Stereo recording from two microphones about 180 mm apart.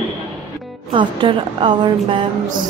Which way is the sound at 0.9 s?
30° right (ahead or behind).